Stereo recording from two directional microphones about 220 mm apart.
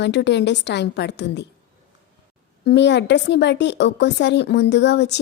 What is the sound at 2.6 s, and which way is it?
A woman's voice, 50° left (ahead or behind).